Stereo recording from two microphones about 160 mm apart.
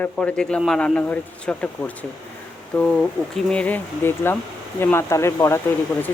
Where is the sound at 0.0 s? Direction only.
10° left (ahead or behind).